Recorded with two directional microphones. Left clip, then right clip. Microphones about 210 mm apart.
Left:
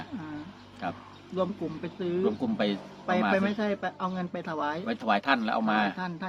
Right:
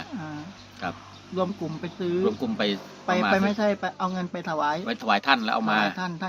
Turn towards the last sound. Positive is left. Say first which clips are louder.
# right 4 dB
turn(degrees=-55)  # may be behind; listen again after turning